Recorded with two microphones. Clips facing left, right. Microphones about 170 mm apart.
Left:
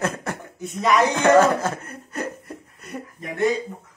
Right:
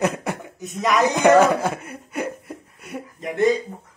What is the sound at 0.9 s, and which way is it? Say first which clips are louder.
Chuckle: right 1 dB; 15° right (ahead or behind).